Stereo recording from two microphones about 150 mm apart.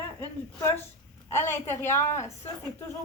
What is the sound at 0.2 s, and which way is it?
A woman's voice, 15° left (ahead or behind).